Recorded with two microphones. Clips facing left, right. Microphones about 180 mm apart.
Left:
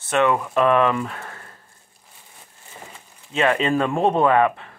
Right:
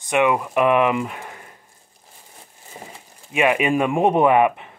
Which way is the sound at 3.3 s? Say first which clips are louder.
Right 1 dB; 15° right (ahead or behind).